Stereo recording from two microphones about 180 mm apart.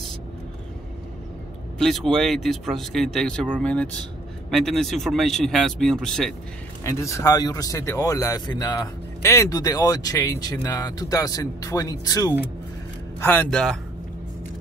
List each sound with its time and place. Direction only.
1.8 s a man's voice: centre (ahead or behind)
6.8 s speech: 15° left (ahead or behind)
13.2 s a man's voice: 10° left (ahead or behind)